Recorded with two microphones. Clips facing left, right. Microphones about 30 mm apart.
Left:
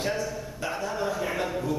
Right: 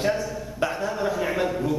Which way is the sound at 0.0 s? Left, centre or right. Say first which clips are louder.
Right 4 dB; centre.